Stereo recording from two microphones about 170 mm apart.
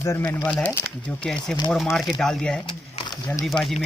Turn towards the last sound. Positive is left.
turn(degrees=0)  # may be behind; listen again after turning